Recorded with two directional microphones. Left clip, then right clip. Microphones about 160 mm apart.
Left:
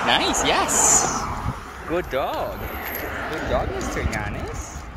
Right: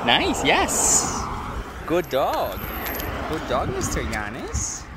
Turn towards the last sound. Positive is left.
turn(degrees=-50)  # may be behind; listen again after turning